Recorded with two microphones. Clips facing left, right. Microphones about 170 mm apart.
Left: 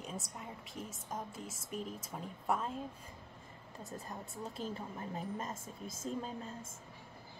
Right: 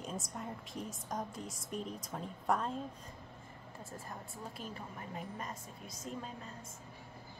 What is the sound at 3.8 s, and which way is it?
Speech, 20° left (ahead or behind).